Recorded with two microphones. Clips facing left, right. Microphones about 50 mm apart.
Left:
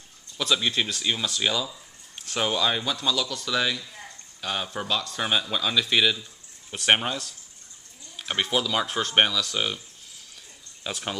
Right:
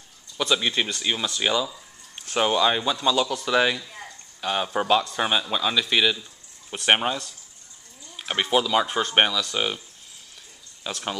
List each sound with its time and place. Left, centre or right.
0.4 s speech: centre
10.8 s speech: centre